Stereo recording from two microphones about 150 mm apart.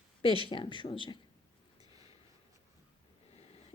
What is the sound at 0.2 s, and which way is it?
Speech, 35° left (ahead or behind).